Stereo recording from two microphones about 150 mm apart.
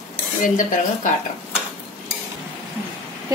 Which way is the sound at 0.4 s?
55° left (ahead or behind).